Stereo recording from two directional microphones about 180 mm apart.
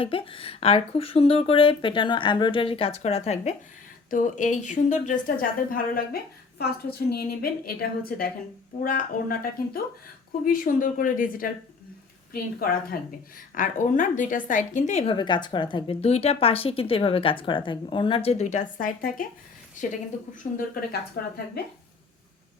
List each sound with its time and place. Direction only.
0.0 s a woman's voice: 30° left (ahead or behind); by 6.0 s 50° left (ahead or behind)
7.1 s a woman's voice: 60° left (ahead or behind)
9.3 s a woman's voice: 55° left (ahead or behind)
20.9 s a woman's voice: 60° left (ahead or behind)